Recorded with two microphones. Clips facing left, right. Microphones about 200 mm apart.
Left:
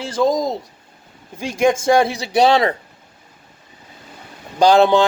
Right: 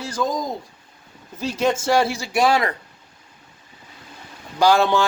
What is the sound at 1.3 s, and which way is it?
Speech, 10° left (ahead or behind).